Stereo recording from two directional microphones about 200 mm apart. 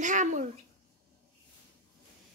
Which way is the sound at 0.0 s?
40° right (ahead or behind).